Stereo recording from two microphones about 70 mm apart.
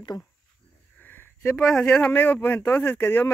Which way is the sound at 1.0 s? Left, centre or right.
Left.